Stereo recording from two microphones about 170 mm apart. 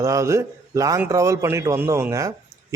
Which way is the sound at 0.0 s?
20° right (ahead or behind).